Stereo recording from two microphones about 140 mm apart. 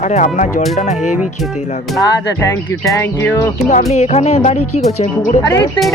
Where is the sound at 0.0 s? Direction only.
60° left (ahead or behind).